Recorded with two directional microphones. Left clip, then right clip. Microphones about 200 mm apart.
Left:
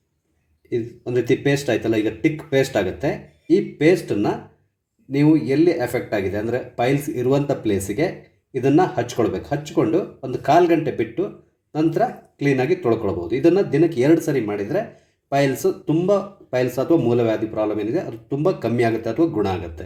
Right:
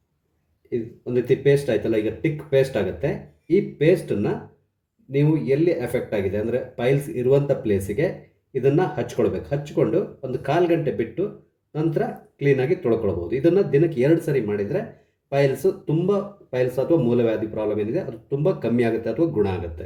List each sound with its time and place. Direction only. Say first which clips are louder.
0.7 s speech: left 2 dB; 20° left (ahead or behind)